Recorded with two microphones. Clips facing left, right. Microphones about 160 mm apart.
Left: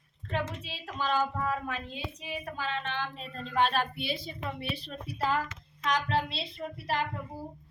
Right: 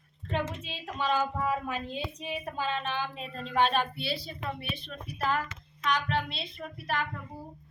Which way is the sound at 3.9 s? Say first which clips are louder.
Even; 15° left (ahead or behind).